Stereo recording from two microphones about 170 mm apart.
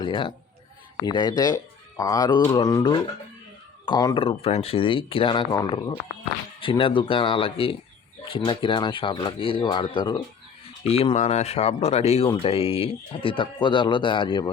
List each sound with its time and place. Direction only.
0.0 s speech: 30° left (ahead or behind)